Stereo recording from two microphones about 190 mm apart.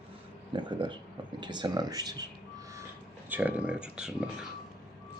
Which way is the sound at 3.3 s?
10° right (ahead or behind).